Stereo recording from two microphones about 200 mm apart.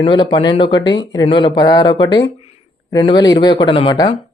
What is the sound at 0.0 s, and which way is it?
Speech, 25° left (ahead or behind).